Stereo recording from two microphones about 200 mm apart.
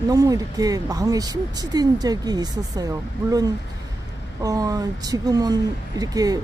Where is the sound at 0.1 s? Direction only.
20° right (ahead or behind).